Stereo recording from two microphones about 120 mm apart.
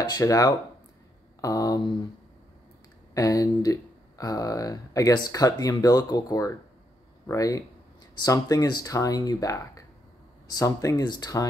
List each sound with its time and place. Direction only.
0.0 s speech: 30° left (ahead or behind)
3.2 s speech: 30° left (ahead or behind)